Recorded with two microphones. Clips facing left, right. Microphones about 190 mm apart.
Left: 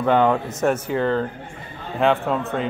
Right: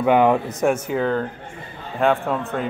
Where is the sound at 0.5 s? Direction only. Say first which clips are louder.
Right 1 dB; centre (ahead or behind).